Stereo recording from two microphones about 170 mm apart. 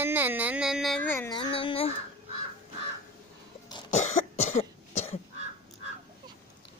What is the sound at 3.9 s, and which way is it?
Cough, 45° left (ahead or behind).